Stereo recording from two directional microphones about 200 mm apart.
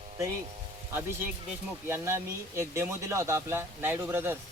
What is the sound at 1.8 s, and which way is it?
Speech, 15° right (ahead or behind).